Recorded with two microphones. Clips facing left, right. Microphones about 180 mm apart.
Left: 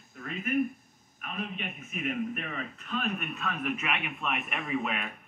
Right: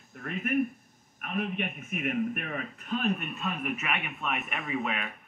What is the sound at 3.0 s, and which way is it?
Speech, 25° right (ahead or behind).